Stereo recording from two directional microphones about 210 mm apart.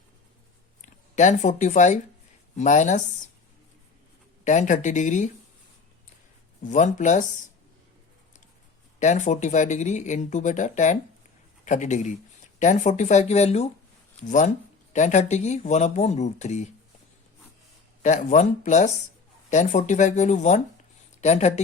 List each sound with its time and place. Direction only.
0.8 s speech: 35° left (ahead or behind)
4.4 s speech: 35° left (ahead or behind)
6.6 s speech: 35° left (ahead or behind)
9.0 s speech: 35° left (ahead or behind)
18.0 s speech: 35° left (ahead or behind)